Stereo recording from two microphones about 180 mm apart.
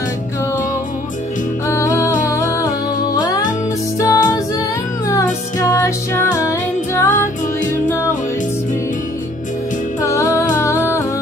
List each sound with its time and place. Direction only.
1.7 s music: 15° left (ahead or behind)
10.0 s music: 15° left (ahead or behind)